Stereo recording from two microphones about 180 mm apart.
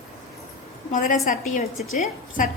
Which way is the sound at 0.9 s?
45° left (ahead or behind).